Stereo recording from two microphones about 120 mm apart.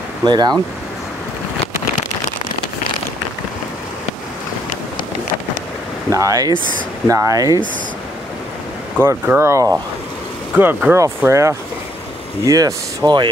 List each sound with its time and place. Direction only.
0.2 s speech: 35° right (ahead or behind)
6.0 s speech: 30° right (ahead or behind)
9.0 s speech: 20° right (ahead or behind); by 13.3 s 40° right (ahead or behind)